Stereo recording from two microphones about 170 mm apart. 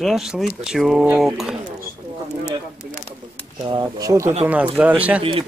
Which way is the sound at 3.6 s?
20° right (ahead or behind).